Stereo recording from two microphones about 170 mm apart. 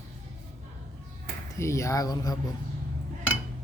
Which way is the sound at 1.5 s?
15° left (ahead or behind).